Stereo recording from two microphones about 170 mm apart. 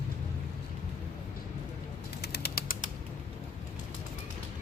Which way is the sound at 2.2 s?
70° left (ahead or behind).